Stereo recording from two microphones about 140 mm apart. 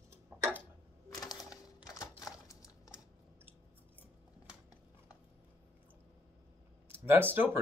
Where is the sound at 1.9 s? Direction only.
25° left (ahead or behind).